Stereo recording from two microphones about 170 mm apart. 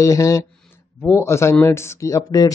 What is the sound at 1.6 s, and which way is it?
Speech, 15° left (ahead or behind).